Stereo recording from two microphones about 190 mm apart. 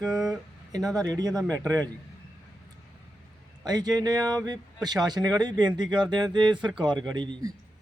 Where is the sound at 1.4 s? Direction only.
5° left (ahead or behind).